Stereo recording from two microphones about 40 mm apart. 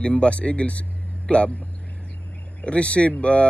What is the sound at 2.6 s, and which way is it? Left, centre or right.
Speech, left.